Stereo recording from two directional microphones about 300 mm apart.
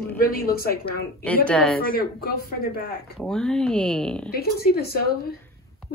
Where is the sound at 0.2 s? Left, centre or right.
Left.